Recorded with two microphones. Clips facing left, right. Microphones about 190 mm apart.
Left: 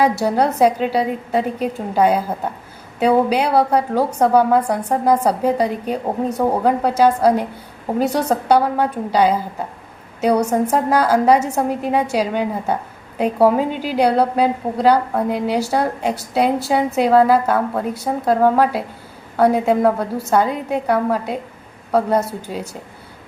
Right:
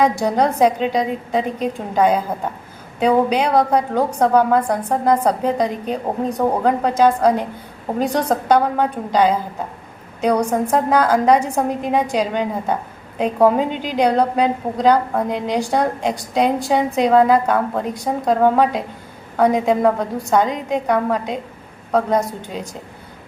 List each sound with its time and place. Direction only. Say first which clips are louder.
0.0 s a woman's voice: even; 5° left (ahead or behind)